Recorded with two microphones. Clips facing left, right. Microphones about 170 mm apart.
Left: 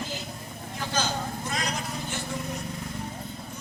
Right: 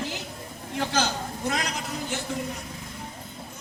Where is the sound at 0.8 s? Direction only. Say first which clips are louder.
Right 3 dB; 70° right (ahead or behind).